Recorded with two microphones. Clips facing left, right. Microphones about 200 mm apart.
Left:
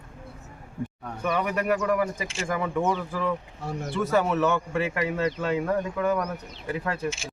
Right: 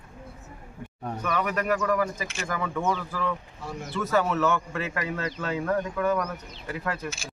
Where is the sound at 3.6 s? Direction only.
55° left (ahead or behind).